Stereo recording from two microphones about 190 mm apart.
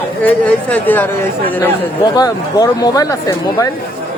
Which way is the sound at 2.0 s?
20° left (ahead or behind).